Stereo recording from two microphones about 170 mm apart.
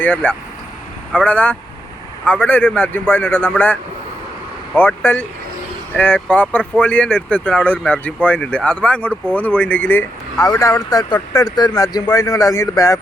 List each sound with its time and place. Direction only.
0.0 s speech: 10° left (ahead or behind)